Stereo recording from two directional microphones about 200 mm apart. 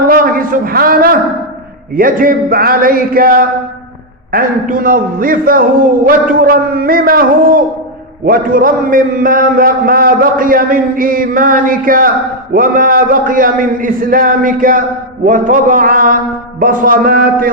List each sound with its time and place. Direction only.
0.1 s a man's voice: 45° right (ahead or behind)